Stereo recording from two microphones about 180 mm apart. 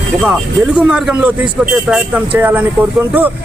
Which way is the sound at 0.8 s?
5° right (ahead or behind).